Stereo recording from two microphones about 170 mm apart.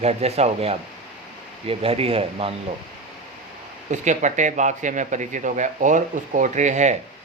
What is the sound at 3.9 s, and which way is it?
Speech, 45° right (ahead or behind).